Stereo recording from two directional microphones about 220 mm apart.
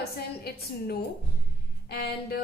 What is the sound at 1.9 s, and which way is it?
Speech, 45° left (ahead or behind).